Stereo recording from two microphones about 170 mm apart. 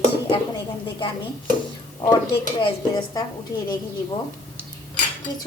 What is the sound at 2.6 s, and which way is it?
Speech, 25° left (ahead or behind).